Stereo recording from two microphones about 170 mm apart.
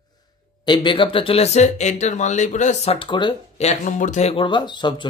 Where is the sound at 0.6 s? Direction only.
25° left (ahead or behind).